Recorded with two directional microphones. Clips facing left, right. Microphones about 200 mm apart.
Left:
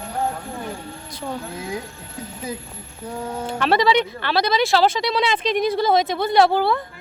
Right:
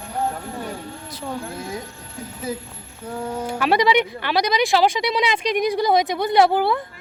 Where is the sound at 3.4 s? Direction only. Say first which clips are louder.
Even; 10° right (ahead or behind).